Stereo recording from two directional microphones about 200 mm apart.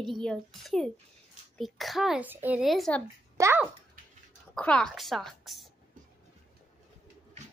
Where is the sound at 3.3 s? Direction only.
15° right (ahead or behind).